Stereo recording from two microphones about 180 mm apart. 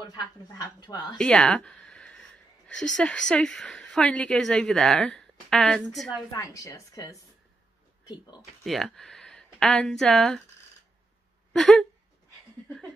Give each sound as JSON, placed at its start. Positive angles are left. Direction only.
{"t": 0.0, "sound": "speech", "side_deg": 20}
{"t": 1.1, "sound": "a woman's voice", "side_deg": 5}
{"t": 6.3, "sound": "speech", "side_deg": 20}
{"t": 8.6, "sound": "speech", "side_deg": 0}
{"t": 11.5, "sound": "a sound", "side_deg": 0}